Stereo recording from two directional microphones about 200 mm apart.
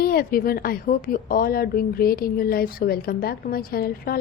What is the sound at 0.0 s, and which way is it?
A woman's voice, 45° left (ahead or behind).